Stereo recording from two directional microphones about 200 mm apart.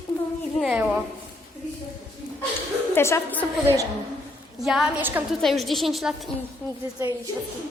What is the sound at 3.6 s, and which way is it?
Speech, 15° right (ahead or behind).